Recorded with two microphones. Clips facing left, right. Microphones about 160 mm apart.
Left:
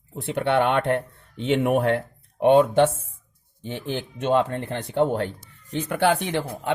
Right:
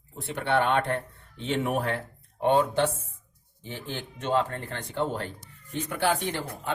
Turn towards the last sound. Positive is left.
turn(degrees=60)  # may be behind; listen again after turning